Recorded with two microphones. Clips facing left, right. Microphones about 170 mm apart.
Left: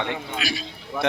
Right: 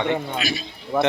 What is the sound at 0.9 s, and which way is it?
Speech, 50° right (ahead or behind).